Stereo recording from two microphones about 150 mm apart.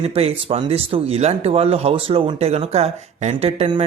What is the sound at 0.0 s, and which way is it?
Speech, 40° right (ahead or behind).